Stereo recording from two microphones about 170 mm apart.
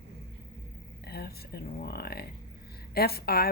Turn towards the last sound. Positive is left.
turn(degrees=65)  # may be behind; listen again after turning